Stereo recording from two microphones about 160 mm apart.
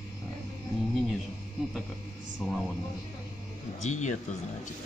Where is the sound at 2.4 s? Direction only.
5° left (ahead or behind).